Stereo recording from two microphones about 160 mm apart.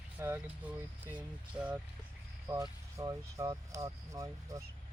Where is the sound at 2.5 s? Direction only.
20° right (ahead or behind).